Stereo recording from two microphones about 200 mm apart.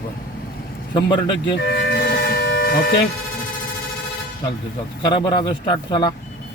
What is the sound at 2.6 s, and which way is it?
Speech, 50° left (ahead or behind).